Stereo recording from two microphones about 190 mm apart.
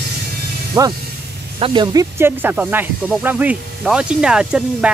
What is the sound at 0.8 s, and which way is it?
Speech, 15° right (ahead or behind).